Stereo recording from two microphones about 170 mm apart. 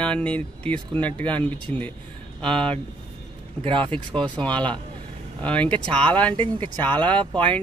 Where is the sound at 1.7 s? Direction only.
40° right (ahead or behind).